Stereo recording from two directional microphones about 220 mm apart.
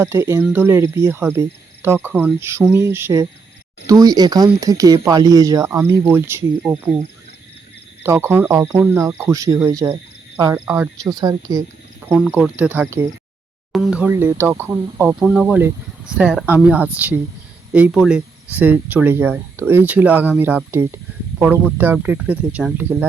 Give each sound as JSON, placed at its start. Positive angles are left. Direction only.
{"t": 0.0, "sound": "speech", "side_deg": -10}
{"t": 8.0, "sound": "speech", "side_deg": -10}